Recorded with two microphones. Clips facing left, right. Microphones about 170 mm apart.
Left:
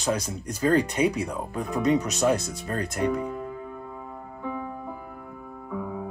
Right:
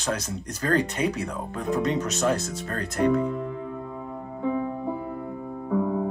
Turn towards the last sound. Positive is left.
turn(degrees=-45)  # may be behind; listen again after turning